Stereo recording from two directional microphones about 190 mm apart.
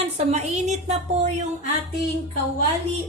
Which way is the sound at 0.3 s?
35° right (ahead or behind).